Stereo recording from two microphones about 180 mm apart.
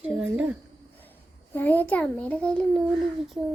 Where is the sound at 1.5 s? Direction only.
10° left (ahead or behind).